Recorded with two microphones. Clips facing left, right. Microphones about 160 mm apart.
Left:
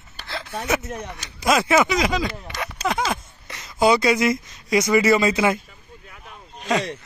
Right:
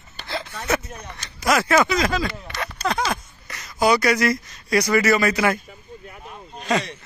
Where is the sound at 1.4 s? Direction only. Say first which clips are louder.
Even; 20° left (ahead or behind).